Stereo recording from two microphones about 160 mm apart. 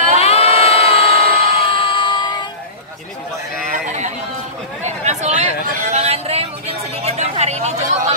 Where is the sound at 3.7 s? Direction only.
50° right (ahead or behind).